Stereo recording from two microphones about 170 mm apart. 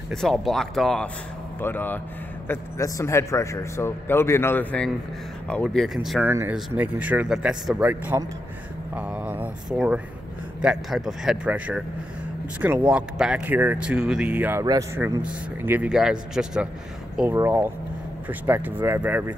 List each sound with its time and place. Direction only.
0.1 s a man's voice: centre (ahead or behind)
6.2 s speech: 10° right (ahead or behind)
12.8 s speech: 5° right (ahead or behind)
14.6 s speech: 20° right (ahead or behind)